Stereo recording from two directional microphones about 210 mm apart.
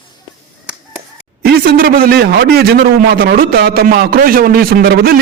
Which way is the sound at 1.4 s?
50° right (ahead or behind).